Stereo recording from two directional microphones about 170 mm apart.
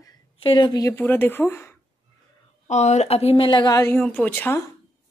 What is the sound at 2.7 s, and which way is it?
A woman's voice, 45° left (ahead or behind).